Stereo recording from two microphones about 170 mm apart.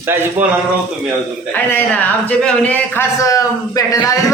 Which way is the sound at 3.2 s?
20° left (ahead or behind).